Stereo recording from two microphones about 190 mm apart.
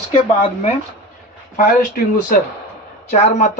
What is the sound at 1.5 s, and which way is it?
Speech, 45° left (ahead or behind).